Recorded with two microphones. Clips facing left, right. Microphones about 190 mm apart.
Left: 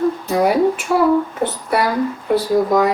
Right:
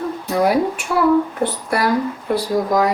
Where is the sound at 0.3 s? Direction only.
Centre (ahead or behind).